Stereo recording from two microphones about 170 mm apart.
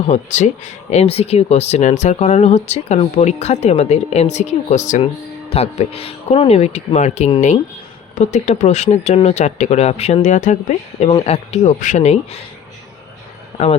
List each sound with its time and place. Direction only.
0.1 s speech: 45° left (ahead or behind)